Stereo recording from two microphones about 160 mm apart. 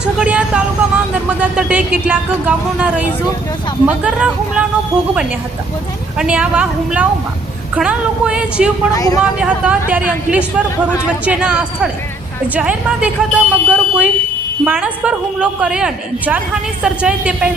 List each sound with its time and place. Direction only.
0.0 s a woman's voice: 5° right (ahead or behind)
6.1 s a woman's voice: 5° right (ahead or behind)
8.9 s speech: 20° left (ahead or behind)
9.4 s a woman's voice: 10° right (ahead or behind)
12.5 s a sound: 10° right (ahead or behind)
14.6 s a woman's voice: 10° right (ahead or behind)